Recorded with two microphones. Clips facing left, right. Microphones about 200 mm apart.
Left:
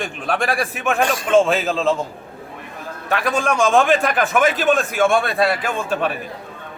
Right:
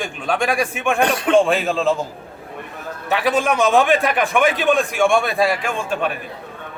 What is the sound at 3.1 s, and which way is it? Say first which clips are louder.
A man's voice: right 2 dB; centre (ahead or behind).